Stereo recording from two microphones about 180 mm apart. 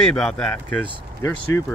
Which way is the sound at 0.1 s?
5° left (ahead or behind).